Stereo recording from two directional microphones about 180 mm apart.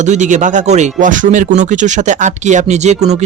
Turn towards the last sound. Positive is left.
turn(degrees=-40)  # may be behind; listen again after turning